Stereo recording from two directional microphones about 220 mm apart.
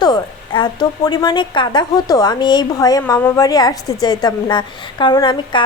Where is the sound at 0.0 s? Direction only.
20° left (ahead or behind).